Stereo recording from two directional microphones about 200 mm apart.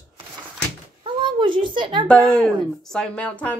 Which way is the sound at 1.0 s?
25° right (ahead or behind).